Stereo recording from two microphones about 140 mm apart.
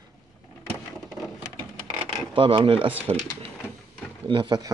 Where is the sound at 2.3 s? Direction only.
35° right (ahead or behind).